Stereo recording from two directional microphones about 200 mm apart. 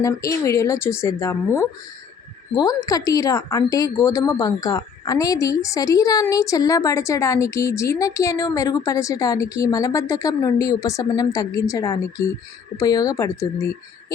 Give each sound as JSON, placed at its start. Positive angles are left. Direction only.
{"t": 0.0, "sound": "a woman's voice", "side_deg": 15}